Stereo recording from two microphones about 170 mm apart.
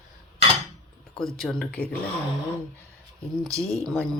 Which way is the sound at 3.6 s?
Centre (ahead or behind).